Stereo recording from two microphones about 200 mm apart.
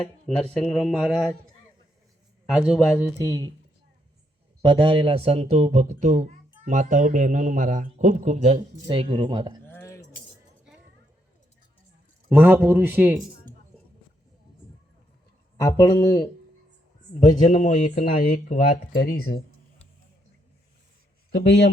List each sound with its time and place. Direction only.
0.0 s speech: 5° left (ahead or behind)
2.5 s speech: centre (ahead or behind)
3.2 s a man's voice: 15° right (ahead or behind)
4.6 s speech: 25° right (ahead or behind)
9.6 s keys jangling: 10° left (ahead or behind)
12.3 s a man's voice: 10° right (ahead or behind)
13.5 s chink: 20° right (ahead or behind)
15.5 s speech: 15° left (ahead or behind)
17.1 s speech: 40° left (ahead or behind)
21.3 s speech: 55° left (ahead or behind)